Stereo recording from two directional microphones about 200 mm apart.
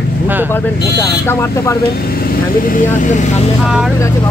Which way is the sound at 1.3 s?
10° left (ahead or behind).